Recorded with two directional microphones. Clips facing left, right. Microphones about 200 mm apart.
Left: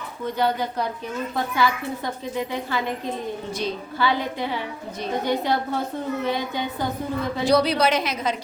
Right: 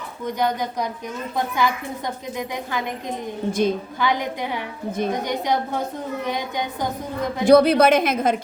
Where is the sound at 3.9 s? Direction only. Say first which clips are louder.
Even; 15° right (ahead or behind).